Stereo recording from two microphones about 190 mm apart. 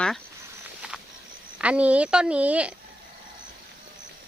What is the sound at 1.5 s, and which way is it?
A woman's voice, 5° right (ahead or behind).